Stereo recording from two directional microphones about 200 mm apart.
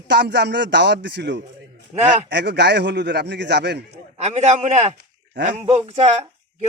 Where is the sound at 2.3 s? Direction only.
60° right (ahead or behind).